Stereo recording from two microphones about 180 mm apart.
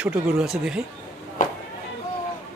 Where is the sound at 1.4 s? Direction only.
45° left (ahead or behind).